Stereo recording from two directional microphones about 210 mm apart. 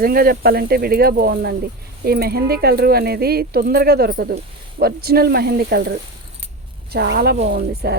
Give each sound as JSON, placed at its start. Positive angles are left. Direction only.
{"t": 0.0, "sound": "speech", "side_deg": -45}
{"t": 7.3, "sound": "speech", "side_deg": -35}
{"t": 7.7, "sound": "speech", "side_deg": -50}